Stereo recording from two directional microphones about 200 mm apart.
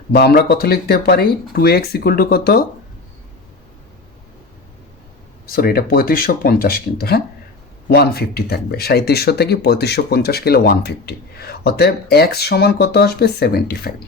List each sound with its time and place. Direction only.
0.1 s speech: 50° left (ahead or behind)
5.5 s speech: 45° left (ahead or behind)